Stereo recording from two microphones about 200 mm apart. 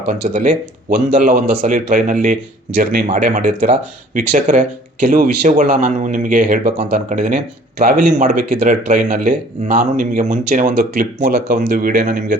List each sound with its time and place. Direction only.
0.3 s a man's voice: 45° right (ahead or behind)